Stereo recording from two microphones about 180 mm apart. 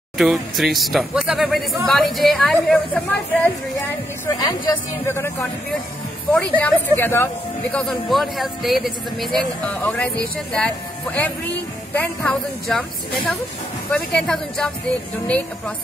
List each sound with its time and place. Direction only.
0.2 s speech: centre (ahead or behind)
4.3 s speech: 20° left (ahead or behind)
7.7 s speech: centre (ahead or behind)
12.6 s speech: centre (ahead or behind)